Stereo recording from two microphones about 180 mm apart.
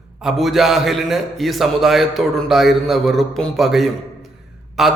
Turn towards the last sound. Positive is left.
turn(degrees=0)  # may be behind; listen again after turning